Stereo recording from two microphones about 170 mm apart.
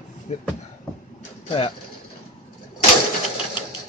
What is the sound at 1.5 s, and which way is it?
Pigeon, 30° left (ahead or behind).